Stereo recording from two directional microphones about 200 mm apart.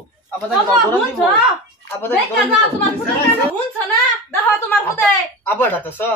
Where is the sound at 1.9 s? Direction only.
10° left (ahead or behind).